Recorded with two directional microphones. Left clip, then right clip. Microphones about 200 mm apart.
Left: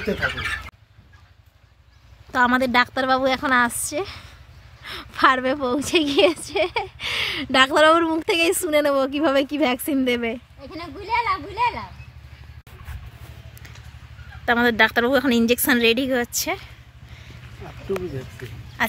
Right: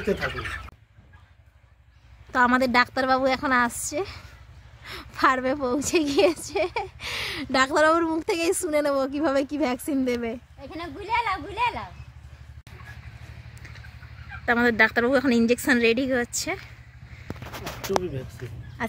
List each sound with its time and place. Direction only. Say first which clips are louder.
2.3 s a woman's voice: left 2 dB; centre (ahead or behind)
10.6 s a sound: left 1 dB; 55° left (ahead or behind)
14.4 s a woman's voice: left 3 dB; centre (ahead or behind)
18.4 s a woman's voice: left 3 dB; centre (ahead or behind)
18.8 s duck: left 8 dB; centre (ahead or behind)